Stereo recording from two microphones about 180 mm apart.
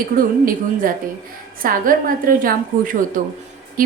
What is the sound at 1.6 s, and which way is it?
A woman's voice, 50° right (ahead or behind).